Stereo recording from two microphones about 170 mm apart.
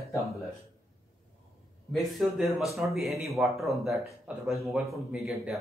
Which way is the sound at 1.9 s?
Centre (ahead or behind).